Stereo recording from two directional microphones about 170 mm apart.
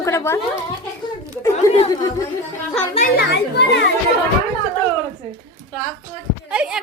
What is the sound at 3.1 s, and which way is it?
Speech, 90° left.